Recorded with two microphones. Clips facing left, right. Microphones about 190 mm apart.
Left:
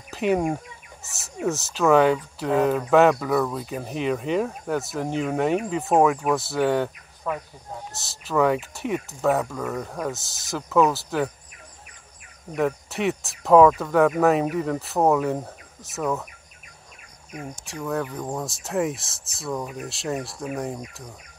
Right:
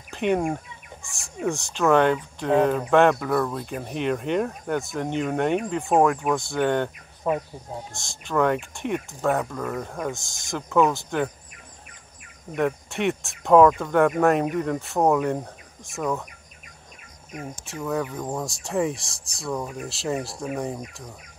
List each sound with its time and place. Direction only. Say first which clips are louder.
0.1 s speech: left 1 dB; 5° left (ahead or behind)
7.2 s speech: right 4 dB; 25° right (ahead or behind)
7.9 s speech: left 1 dB; 5° left (ahead or behind)
12.5 s speech: even; centre (ahead or behind)
17.3 s speech: even; centre (ahead or behind)